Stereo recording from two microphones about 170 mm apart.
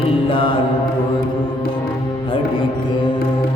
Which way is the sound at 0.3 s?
30° left (ahead or behind).